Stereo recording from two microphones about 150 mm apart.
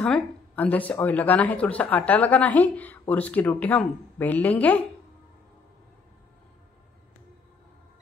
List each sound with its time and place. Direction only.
0.0 s speech: 10° left (ahead or behind)